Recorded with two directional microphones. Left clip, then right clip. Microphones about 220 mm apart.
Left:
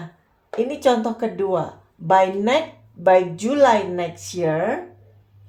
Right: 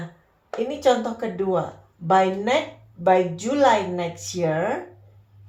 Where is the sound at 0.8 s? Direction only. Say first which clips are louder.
Left 1 dB; 40° left (ahead or behind).